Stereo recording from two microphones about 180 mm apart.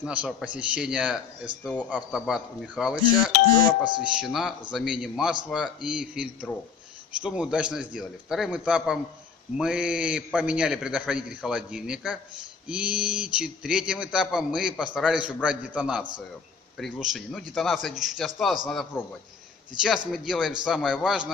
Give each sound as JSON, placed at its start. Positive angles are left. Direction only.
{"t": 0.0, "sound": "a man's voice", "side_deg": -5}
{"t": 1.6, "sound": "a man's voice", "side_deg": 5}
{"t": 1.9, "sound": "a man's voice", "side_deg": -5}
{"t": 3.4, "sound": "speech", "side_deg": 20}
{"t": 4.2, "sound": "a man's voice", "side_deg": 0}
{"t": 20.1, "sound": "a man's voice", "side_deg": -5}